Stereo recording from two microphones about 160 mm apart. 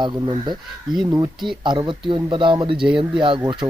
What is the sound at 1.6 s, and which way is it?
Speech, 30° right (ahead or behind).